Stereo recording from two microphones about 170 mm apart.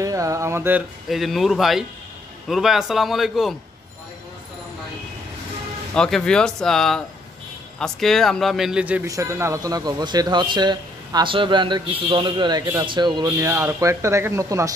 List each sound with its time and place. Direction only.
0.0 s speech: 20° right (ahead or behind); by 3.5 s centre (ahead or behind)
5.9 s speech: 5° left (ahead or behind)
9.0 s a man's voice: 20° right (ahead or behind)